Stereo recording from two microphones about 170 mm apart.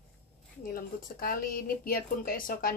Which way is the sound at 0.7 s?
55° left (ahead or behind).